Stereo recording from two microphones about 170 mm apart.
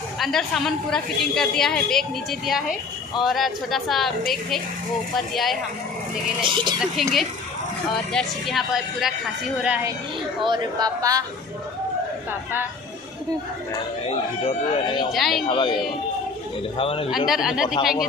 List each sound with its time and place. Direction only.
0.2 s a woman's voice: centre (ahead or behind)
5.3 s a woman's voice: centre (ahead or behind)
6.4 s speech: 30° right (ahead or behind)
6.8 s a woman's voice: centre (ahead or behind)
10.4 s speech: 25° right (ahead or behind)
14.0 s speech: 30° left (ahead or behind)
15.0 s a woman's voice: centre (ahead or behind)
15.4 s speech: 30° left (ahead or behind)
17.3 s a woman's voice: 5° right (ahead or behind)